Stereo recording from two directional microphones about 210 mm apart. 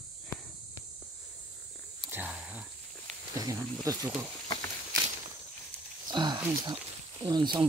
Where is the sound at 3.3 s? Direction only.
15° right (ahead or behind).